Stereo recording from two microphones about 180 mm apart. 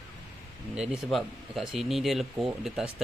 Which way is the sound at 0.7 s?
5° right (ahead or behind).